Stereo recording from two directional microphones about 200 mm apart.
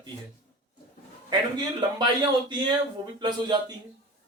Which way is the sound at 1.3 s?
20° right (ahead or behind).